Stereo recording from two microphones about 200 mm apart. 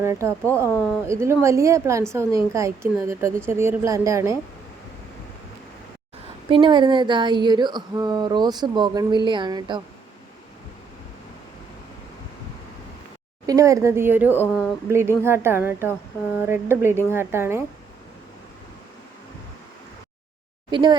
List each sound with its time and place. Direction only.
0.0 s a woman's voice: 15° right (ahead or behind)
6.5 s speech: 25° right (ahead or behind)
13.5 s a woman's voice: 15° right (ahead or behind)
14.3 s speech: 5° left (ahead or behind)
14.8 s a woman's voice: 15° right (ahead or behind)
20.7 s speech: 20° right (ahead or behind)